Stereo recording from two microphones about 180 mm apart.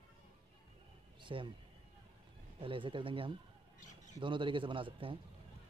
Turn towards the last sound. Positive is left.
turn(degrees=-30)  # may be behind; listen again after turning